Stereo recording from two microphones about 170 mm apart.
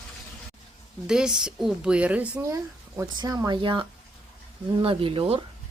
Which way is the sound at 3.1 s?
20° right (ahead or behind).